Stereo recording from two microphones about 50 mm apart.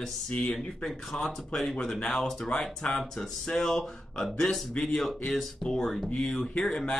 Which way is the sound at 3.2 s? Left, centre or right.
Centre.